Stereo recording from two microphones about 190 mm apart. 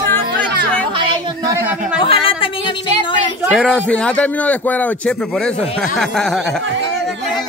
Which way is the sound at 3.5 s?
Centre (ahead or behind).